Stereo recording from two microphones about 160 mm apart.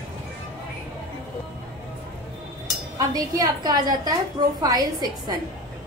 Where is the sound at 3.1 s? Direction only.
25° right (ahead or behind).